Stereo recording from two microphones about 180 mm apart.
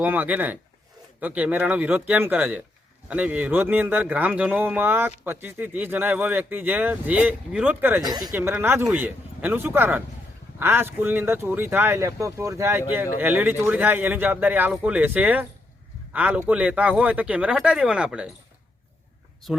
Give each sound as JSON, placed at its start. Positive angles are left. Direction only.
{"t": 0.0, "sound": "speech", "side_deg": -10}
{"t": 8.0, "sound": "a woman's voice", "side_deg": -20}
{"t": 8.3, "sound": "speech", "side_deg": -10}